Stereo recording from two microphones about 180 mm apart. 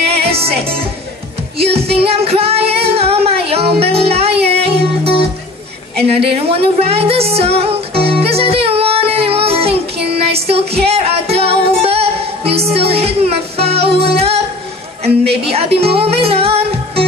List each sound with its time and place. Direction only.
0.3 s music: 35° right (ahead or behind)
2.0 s music: 35° right (ahead or behind)
15.2 s speech: 35° right (ahead or behind)